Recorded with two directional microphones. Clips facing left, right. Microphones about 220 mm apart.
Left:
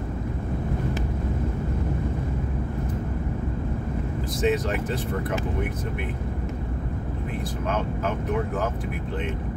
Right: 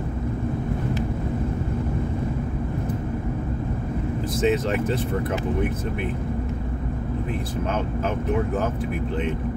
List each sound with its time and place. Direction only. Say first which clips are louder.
4.4 s speech: right 2 dB; 25° right (ahead or behind)